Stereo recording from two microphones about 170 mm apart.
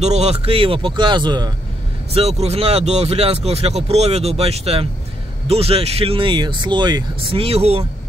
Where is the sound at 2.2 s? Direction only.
40° right (ahead or behind).